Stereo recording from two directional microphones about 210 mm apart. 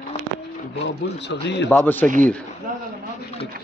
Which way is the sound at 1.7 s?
10° left (ahead or behind).